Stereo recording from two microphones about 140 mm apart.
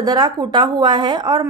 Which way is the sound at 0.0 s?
30° right (ahead or behind).